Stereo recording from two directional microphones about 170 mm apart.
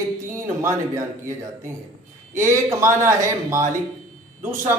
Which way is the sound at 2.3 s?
15° right (ahead or behind).